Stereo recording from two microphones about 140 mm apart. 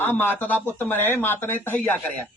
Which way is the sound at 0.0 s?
15° left (ahead or behind).